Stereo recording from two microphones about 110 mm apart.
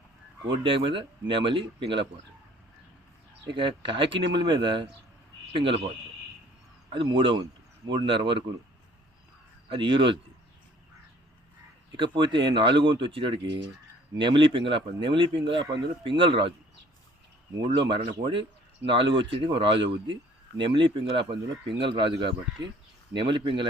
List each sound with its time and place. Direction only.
0.5 s speech: 50° right (ahead or behind)
3.5 s speech: 45° right (ahead or behind)
6.9 s speech: 50° right (ahead or behind)
9.6 s speech: 50° right (ahead or behind)
11.9 s speech: 45° right (ahead or behind)
17.7 s speech: 50° right (ahead or behind)